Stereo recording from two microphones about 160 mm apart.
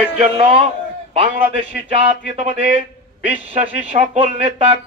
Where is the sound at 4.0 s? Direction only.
40° right (ahead or behind).